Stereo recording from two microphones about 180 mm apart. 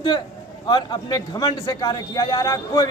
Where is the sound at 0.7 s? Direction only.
25° left (ahead or behind).